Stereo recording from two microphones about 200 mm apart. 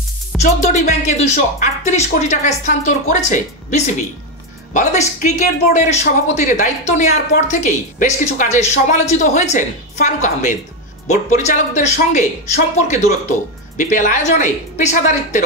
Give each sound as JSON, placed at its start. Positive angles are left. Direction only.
{"t": 0.3, "sound": "music", "side_deg": 0}
{"t": 1.0, "sound": "speech", "side_deg": 35}